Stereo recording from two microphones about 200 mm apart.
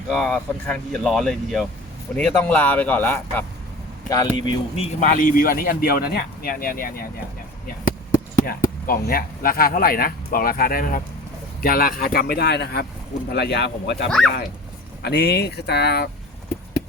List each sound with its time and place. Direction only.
0.1 s speech: centre (ahead or behind)
4.1 s speech: 20° left (ahead or behind)
4.9 s speech: 40° left (ahead or behind); by 16.0 s 55° left (ahead or behind)